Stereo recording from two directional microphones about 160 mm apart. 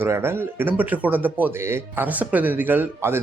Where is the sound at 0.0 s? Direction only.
15° right (ahead or behind).